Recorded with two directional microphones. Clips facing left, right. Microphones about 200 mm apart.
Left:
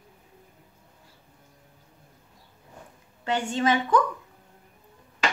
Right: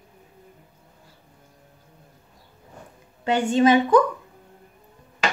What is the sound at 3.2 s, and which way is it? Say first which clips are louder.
Speech: right 7 dB; 15° right (ahead or behind).